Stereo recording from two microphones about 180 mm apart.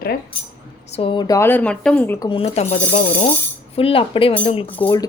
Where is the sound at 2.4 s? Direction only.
35° left (ahead or behind).